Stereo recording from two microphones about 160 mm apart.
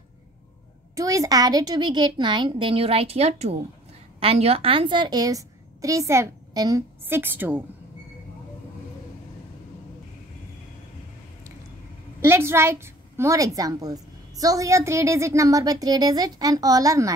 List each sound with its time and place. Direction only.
0.9 s a woman's voice: 20° right (ahead or behind)
7.1 s a woman's voice: 15° right (ahead or behind)
12.3 s a woman's voice: 15° right (ahead or behind)